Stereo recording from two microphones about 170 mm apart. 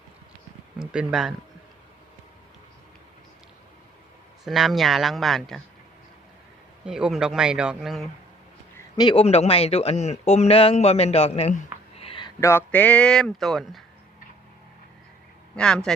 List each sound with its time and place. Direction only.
0.8 s speech: 5° right (ahead or behind)
4.4 s speech: centre (ahead or behind)
6.8 s speech: 5° right (ahead or behind)
9.0 s speech: 30° left (ahead or behind)
11.9 s a sound: 30° left (ahead or behind)
12.4 s speech: 15° left (ahead or behind)
15.5 s speech: 5° left (ahead or behind)